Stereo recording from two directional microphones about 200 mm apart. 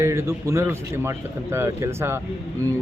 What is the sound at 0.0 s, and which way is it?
A man's voice, 15° right (ahead or behind).